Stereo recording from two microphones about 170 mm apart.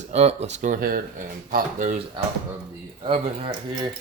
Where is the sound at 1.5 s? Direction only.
50° right (ahead or behind).